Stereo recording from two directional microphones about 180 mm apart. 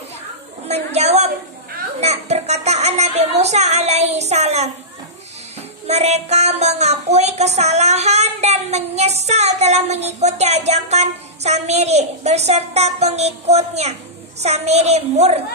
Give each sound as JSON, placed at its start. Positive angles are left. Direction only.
{"t": 0.7, "sound": "a sound", "side_deg": -35}
{"t": 2.0, "sound": "a woman's voice", "side_deg": -35}
{"t": 5.9, "sound": "a woman's voice", "side_deg": -35}